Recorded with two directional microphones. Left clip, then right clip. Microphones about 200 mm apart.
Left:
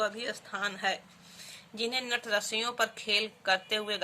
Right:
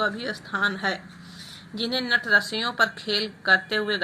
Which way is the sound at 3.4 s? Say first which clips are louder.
Right 8 dB; 25° left (ahead or behind).